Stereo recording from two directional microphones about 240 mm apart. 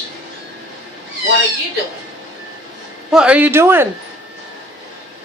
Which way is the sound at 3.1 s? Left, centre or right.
Centre.